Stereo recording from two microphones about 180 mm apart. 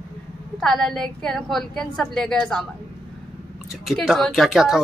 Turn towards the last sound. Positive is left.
turn(degrees=0)  # may be behind; listen again after turning